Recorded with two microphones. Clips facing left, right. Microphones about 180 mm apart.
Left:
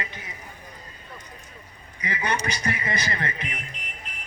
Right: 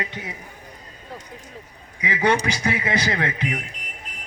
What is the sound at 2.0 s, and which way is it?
A man's voice, 90° right.